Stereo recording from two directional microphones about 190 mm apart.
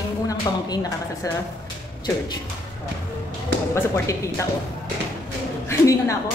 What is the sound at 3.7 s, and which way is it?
Speech, 10° left (ahead or behind).